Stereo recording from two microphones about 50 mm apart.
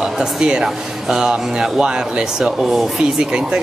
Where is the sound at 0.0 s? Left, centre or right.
Centre.